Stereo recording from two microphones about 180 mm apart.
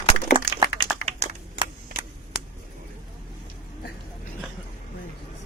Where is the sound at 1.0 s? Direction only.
35° right (ahead or behind).